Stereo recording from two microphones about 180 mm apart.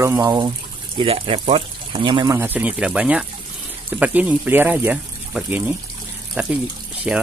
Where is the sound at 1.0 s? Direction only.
30° right (ahead or behind).